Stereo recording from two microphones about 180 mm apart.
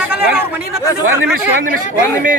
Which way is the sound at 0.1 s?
10° right (ahead or behind).